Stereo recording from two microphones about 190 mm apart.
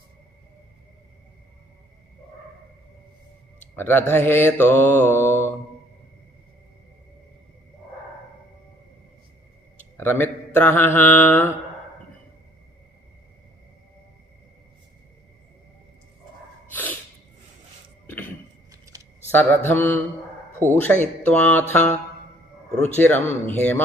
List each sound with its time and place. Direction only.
3.8 s mantra: 10° left (ahead or behind)
10.0 s mantra: 10° left (ahead or behind)
16.7 s sneeze: 10° left (ahead or behind)
18.0 s cough: 10° left (ahead or behind)
18.7 s a sound: 20° right (ahead or behind)
19.3 s mantra: 10° left (ahead or behind)
23.0 s mantra: 10° left (ahead or behind)